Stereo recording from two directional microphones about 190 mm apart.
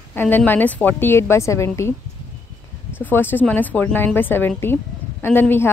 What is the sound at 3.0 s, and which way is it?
A woman's voice, 10° left (ahead or behind).